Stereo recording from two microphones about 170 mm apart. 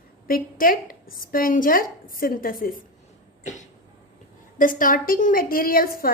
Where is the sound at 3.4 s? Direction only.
45° left (ahead or behind).